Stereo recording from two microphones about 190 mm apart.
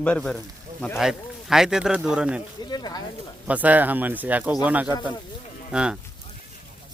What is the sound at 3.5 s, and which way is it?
Speech, 10° right (ahead or behind).